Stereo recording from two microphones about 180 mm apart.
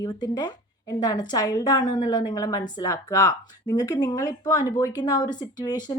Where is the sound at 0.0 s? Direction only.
25° left (ahead or behind).